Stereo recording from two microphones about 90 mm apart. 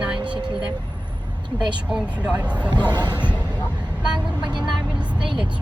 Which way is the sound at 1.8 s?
10° right (ahead or behind).